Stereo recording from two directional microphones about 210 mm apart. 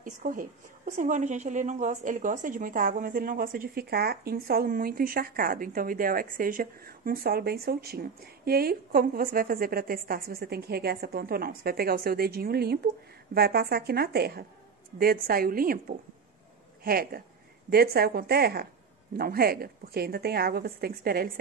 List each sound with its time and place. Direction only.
0.0 s a woman's voice: 40° right (ahead or behind)